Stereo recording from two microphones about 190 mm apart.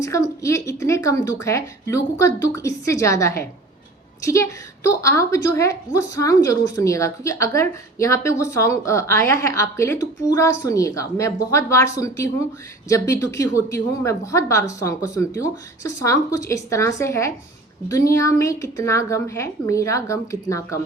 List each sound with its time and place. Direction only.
0.0 s a woman's voice: 15° left (ahead or behind)